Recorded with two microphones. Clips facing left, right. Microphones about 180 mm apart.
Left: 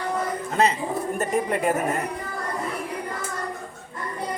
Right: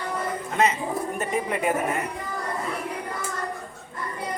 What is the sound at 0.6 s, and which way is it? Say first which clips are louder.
Speech: left 1 dB; 35° left (ahead or behind).